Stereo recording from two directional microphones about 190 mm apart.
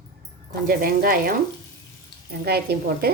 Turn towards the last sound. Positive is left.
turn(degrees=-55)  # may be behind; listen again after turning